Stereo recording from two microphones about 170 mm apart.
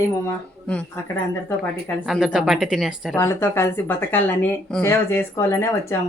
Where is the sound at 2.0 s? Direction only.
Centre (ahead or behind).